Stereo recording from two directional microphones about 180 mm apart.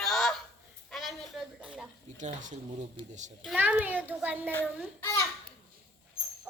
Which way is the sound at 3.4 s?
5° right (ahead or behind).